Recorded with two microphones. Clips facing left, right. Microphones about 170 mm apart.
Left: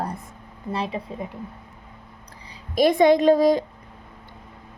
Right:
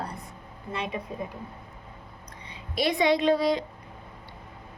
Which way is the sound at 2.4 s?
45° left (ahead or behind).